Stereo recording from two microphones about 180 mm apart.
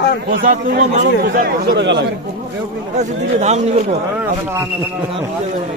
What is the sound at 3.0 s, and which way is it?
Speech, 40° right (ahead or behind).